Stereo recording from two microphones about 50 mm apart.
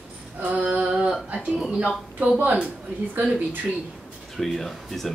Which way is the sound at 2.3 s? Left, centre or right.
Right.